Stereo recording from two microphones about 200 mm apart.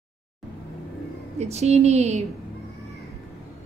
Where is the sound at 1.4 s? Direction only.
30° right (ahead or behind).